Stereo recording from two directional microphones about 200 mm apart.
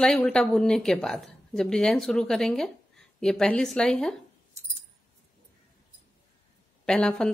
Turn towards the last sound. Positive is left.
turn(degrees=5)  # may be behind; listen again after turning